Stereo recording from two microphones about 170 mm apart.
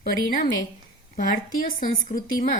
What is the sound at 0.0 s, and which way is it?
A woman's voice, 55° left (ahead or behind).